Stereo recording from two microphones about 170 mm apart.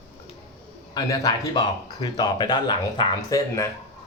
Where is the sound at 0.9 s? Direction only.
20° left (ahead or behind).